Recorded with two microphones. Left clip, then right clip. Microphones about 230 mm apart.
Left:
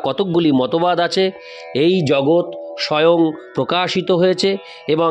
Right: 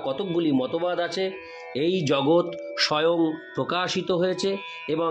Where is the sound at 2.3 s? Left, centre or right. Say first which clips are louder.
Left 5 dB; centre.